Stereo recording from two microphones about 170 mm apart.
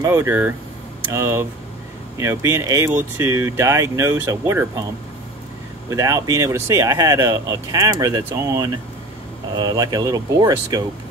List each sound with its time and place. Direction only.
0.0 s speech: 15° right (ahead or behind)
5.9 s speech: 20° right (ahead or behind)